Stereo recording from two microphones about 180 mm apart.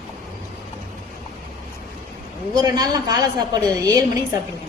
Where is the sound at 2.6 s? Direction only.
20° right (ahead or behind).